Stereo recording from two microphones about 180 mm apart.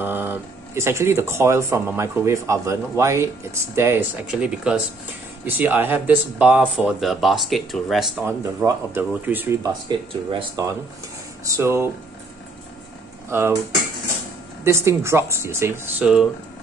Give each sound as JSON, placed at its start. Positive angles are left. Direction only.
{"t": 0.0, "sound": "speech", "side_deg": -10}
{"t": 8.3, "sound": "speech", "side_deg": -15}
{"t": 14.6, "sound": "speech", "side_deg": -15}